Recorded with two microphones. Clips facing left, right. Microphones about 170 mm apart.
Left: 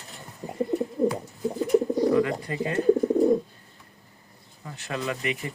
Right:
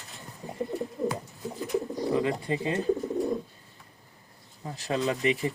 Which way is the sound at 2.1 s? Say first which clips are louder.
Left 3 dB; 25° right (ahead or behind).